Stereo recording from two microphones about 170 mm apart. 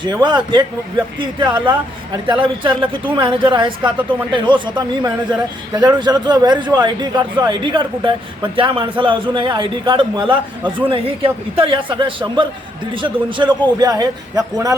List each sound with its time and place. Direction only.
0.0 s speech: 25° right (ahead or behind)